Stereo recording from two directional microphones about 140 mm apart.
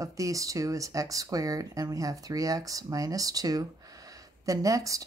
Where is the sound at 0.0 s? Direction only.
25° right (ahead or behind).